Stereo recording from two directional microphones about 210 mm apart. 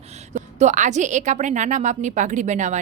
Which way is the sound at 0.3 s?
35° right (ahead or behind).